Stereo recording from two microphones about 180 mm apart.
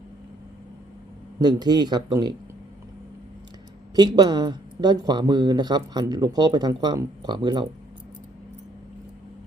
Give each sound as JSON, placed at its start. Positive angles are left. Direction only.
{"t": 1.4, "sound": "speech", "side_deg": -20}
{"t": 3.9, "sound": "speech", "side_deg": -25}